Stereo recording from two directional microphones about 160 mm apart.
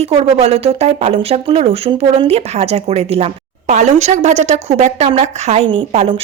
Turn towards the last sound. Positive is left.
turn(degrees=-35)  # may be behind; listen again after turning